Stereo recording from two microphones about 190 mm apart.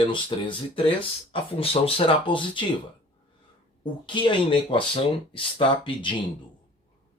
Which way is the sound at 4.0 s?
25° left (ahead or behind).